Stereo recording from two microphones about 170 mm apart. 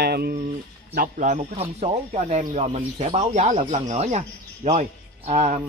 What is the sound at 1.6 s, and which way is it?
Speech, 40° right (ahead or behind).